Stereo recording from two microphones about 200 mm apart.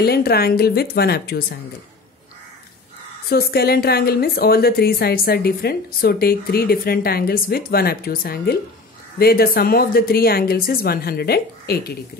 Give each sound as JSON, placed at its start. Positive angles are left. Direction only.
{"t": 0.0, "sound": "a woman's voice", "side_deg": 50}
{"t": 3.3, "sound": "a woman's voice", "side_deg": 50}